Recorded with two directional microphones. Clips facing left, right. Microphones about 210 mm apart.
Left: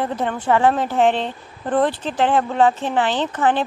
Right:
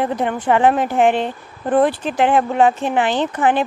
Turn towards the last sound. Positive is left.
turn(degrees=-15)  # may be behind; listen again after turning